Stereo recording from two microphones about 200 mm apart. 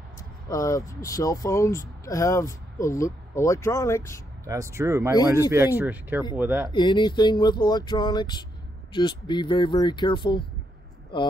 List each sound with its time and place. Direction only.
0.5 s speech: 15° left (ahead or behind)
4.5 s speech: 15° right (ahead or behind)
6.7 s speech: 20° left (ahead or behind)